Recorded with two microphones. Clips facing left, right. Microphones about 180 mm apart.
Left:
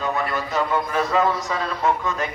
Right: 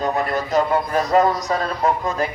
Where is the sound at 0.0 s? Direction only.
40° right (ahead or behind).